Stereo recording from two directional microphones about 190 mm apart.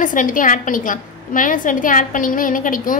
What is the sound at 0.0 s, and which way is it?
A woman's voice, 45° left (ahead or behind).